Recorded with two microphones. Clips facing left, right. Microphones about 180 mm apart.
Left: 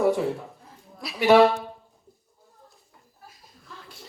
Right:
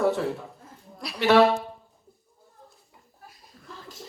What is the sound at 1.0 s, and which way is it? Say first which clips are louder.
Speech: left 2 dB; centre (ahead or behind).